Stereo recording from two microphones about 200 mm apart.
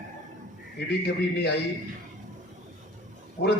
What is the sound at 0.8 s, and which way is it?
Speech, 55° left (ahead or behind).